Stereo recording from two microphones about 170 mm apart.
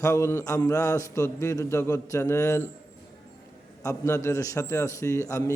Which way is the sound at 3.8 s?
15° left (ahead or behind).